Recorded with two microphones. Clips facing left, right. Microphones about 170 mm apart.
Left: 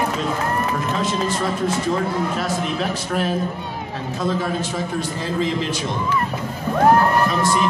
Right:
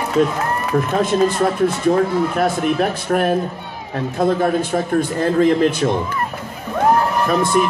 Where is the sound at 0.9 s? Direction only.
55° right (ahead or behind).